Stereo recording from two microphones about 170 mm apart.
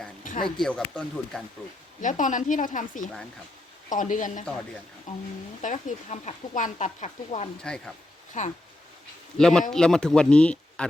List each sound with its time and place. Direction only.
0.2 s a sound: 55° left (ahead or behind)
0.6 s speech: 5° left (ahead or behind)
2.0 s speech: 50° left (ahead or behind)
7.6 s speech: 5° left (ahead or behind)
8.4 s speech: 45° left (ahead or behind)
9.4 s speech: 5° left (ahead or behind)